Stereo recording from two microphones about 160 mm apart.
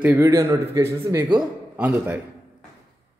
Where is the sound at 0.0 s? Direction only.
15° right (ahead or behind).